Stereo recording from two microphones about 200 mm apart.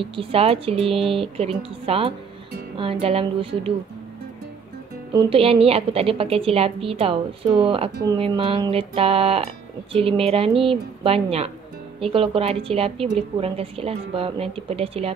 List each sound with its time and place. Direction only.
0.0 s a woman's voice: 25° right (ahead or behind)
5.1 s a woman's voice: 30° right (ahead or behind)